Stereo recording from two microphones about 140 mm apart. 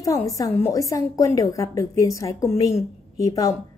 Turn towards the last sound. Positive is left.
turn(degrees=25)  # may be behind; listen again after turning